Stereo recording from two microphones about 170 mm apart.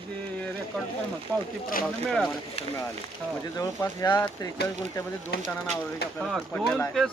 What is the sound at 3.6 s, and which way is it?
Speech, 15° left (ahead or behind).